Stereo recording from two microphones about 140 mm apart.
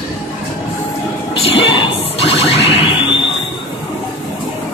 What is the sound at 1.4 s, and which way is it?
Music, 40° left (ahead or behind).